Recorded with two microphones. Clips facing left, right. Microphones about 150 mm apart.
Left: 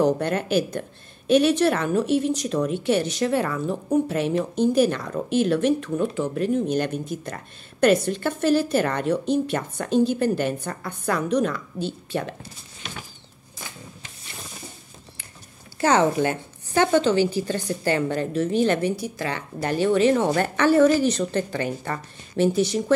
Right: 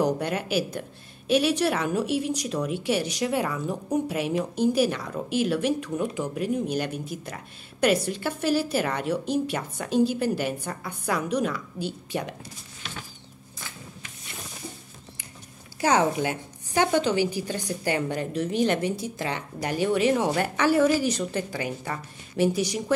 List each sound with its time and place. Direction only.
0.0 s a woman's voice: 10° right (ahead or behind)
12.8 s a sound: 20° left (ahead or behind)
15.8 s a woman's voice: 10° right (ahead or behind)